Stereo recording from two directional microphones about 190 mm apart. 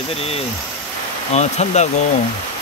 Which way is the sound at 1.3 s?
35° left (ahead or behind).